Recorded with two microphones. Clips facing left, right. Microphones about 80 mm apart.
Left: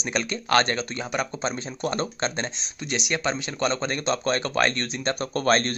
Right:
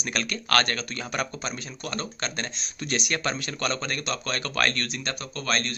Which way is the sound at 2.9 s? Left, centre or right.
Centre.